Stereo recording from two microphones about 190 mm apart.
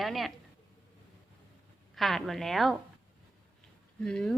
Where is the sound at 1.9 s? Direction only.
Centre (ahead or behind).